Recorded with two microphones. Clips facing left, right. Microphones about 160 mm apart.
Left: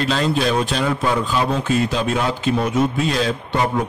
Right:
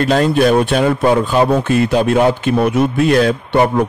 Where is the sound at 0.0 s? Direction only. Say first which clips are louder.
Right 7 dB; 50° right (ahead or behind).